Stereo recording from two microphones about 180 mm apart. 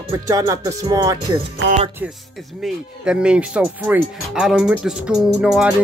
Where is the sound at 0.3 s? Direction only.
20° right (ahead or behind).